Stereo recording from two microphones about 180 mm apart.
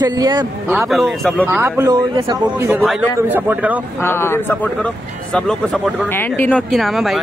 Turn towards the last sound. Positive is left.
turn(degrees=0)  # may be behind; listen again after turning